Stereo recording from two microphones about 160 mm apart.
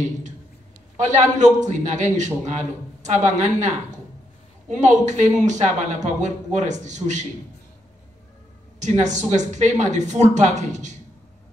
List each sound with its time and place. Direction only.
0.9 s speech: 50° right (ahead or behind)
8.7 s speech: 50° right (ahead or behind)